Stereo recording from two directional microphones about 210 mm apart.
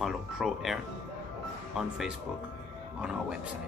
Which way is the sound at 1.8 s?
Centre (ahead or behind).